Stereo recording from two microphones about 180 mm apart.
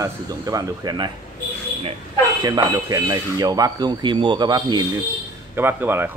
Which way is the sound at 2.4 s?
20° right (ahead or behind).